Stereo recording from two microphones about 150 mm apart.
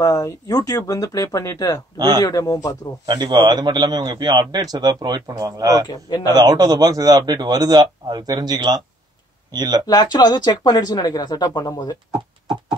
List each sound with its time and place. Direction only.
0.0 s speech: 25° left (ahead or behind)
2.0 s a man's voice: 25° right (ahead or behind)
2.2 s speech: 25° left (ahead or behind)
3.1 s a man's voice: 30° right (ahead or behind)
5.9 s speech: 25° left (ahead or behind)
6.2 s a man's voice: 25° right (ahead or behind)
9.8 s speech: 30° left (ahead or behind)